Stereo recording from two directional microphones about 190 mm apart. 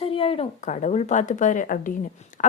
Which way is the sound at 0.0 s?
30° left (ahead or behind).